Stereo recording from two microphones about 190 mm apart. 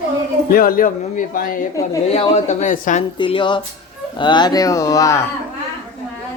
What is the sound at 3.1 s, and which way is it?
Speech, 25° left (ahead or behind).